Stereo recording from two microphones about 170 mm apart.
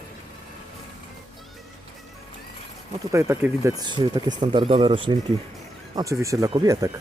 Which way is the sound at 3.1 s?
15° right (ahead or behind).